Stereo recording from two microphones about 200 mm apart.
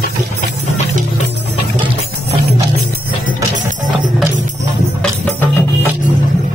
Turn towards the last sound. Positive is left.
turn(degrees=10)  # may be behind; listen again after turning